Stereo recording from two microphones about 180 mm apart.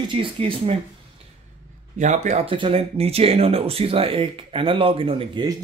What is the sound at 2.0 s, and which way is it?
Speech, 40° right (ahead or behind).